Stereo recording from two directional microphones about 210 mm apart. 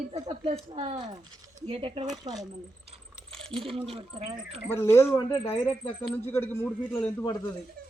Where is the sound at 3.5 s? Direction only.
25° right (ahead or behind).